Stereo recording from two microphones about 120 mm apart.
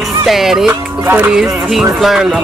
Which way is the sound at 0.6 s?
15° right (ahead or behind).